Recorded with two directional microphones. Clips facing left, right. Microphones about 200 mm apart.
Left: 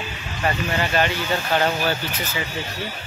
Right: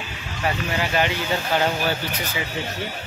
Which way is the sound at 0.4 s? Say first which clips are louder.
Left 1 dB; 5° right (ahead or behind).